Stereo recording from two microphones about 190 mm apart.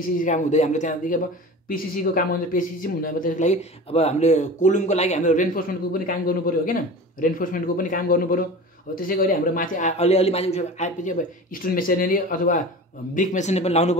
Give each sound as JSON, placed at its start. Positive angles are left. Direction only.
{"t": 0.2, "sound": "speech", "side_deg": 40}